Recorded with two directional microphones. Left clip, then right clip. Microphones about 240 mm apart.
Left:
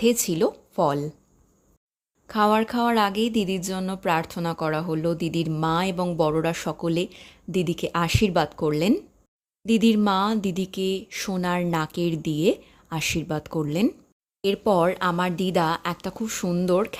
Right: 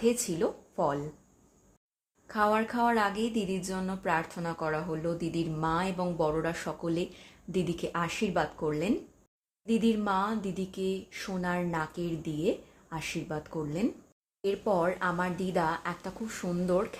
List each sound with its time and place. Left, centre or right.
0.0 s a woman's voice: left
2.2 s speech: left